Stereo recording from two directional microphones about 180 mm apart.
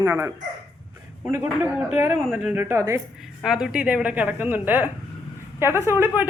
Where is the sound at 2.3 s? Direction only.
10° right (ahead or behind).